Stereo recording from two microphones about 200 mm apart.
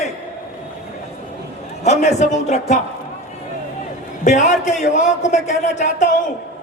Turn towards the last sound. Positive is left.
turn(degrees=40)  # may be behind; listen again after turning